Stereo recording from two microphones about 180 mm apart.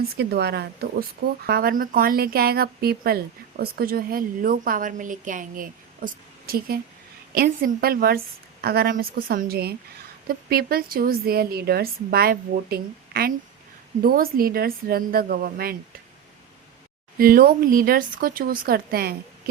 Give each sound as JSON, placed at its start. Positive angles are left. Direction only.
{"t": 0.2, "sound": "a woman's voice", "side_deg": -65}
{"t": 17.2, "sound": "a woman's voice", "side_deg": -55}